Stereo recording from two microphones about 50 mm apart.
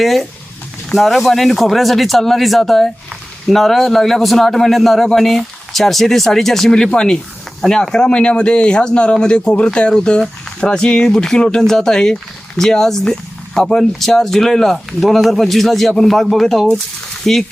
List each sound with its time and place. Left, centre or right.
0.0 s speech: centre